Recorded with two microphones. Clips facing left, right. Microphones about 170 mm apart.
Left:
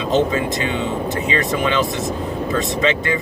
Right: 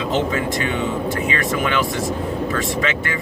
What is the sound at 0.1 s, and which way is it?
Speech, 20° left (ahead or behind).